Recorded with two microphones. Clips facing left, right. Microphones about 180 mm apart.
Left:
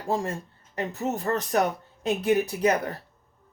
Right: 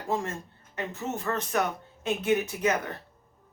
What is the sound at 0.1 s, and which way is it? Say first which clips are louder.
Speech: left 3 dB; 35° left (ahead or behind).